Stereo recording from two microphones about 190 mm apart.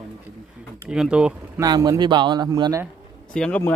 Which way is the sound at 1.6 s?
20° right (ahead or behind).